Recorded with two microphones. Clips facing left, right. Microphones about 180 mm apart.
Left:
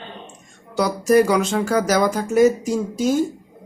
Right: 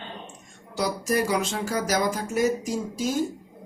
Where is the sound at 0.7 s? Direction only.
65° left (ahead or behind).